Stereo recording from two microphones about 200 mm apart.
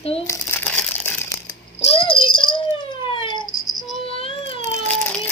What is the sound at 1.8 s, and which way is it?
Rattle, 30° left (ahead or behind).